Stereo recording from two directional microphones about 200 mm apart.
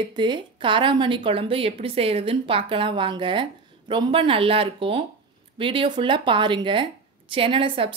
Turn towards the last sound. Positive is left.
turn(degrees=-25)  # may be behind; listen again after turning